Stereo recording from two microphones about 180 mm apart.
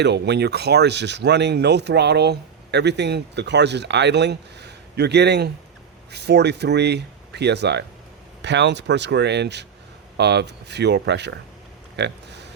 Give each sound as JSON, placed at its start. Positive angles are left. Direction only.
{"t": 0.0, "sound": "speech", "side_deg": -70}